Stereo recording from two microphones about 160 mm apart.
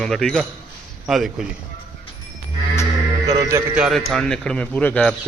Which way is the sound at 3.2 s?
20° right (ahead or behind).